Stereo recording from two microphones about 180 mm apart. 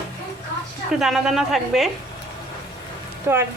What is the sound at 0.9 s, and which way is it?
A woman's voice, centre (ahead or behind).